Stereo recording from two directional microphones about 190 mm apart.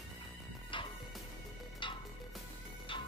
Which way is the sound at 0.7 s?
25° left (ahead or behind).